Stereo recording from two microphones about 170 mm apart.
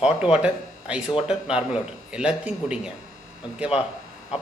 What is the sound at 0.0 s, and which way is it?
A man's voice, 5° right (ahead or behind).